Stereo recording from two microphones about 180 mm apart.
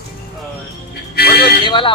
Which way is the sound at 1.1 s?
60° left (ahead or behind).